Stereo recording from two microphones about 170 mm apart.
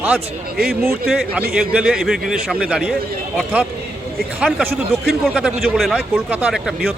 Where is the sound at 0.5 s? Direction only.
60° right (ahead or behind).